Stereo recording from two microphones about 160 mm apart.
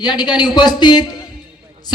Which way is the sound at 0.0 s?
25° left (ahead or behind).